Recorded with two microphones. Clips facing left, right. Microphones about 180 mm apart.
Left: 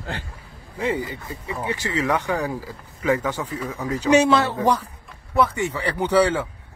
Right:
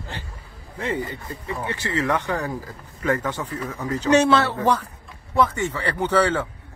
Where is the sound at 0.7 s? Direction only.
10° left (ahead or behind).